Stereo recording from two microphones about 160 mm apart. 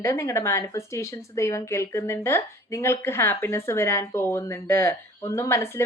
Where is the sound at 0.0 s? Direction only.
20° left (ahead or behind).